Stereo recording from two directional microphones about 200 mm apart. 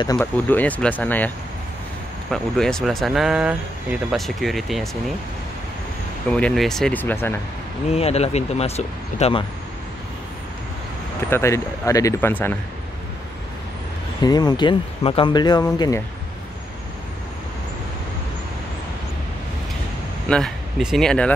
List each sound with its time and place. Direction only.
0.0 s speech: 20° left (ahead or behind)
0.5 s speech: 10° left (ahead or behind)
2.3 s speech: centre (ahead or behind)
6.3 s speech: 5° left (ahead or behind)
7.9 s speech: 30° left (ahead or behind)
11.2 s speech: 15° left (ahead or behind)
14.2 s speech: 20° left (ahead or behind)
20.2 s speech: 5° left (ahead or behind)